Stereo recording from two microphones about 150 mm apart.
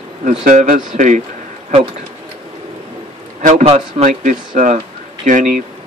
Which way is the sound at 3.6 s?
45° right (ahead or behind).